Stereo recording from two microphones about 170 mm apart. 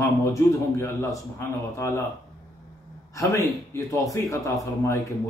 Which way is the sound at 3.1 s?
20° left (ahead or behind).